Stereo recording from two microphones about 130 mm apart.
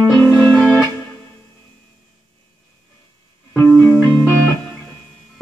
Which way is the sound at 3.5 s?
15° left (ahead or behind).